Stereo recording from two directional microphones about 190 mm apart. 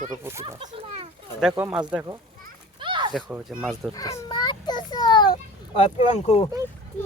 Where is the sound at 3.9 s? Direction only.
20° left (ahead or behind).